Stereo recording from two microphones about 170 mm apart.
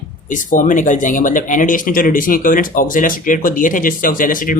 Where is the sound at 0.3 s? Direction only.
50° left (ahead or behind).